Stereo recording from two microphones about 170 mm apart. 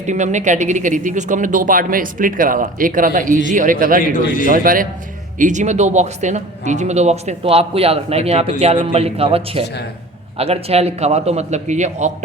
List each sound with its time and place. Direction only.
0.0 s a man's voice: 45° right (ahead or behind)